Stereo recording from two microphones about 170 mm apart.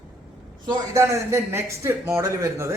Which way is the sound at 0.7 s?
15° right (ahead or behind).